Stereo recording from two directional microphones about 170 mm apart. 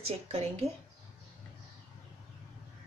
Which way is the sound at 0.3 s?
40° right (ahead or behind).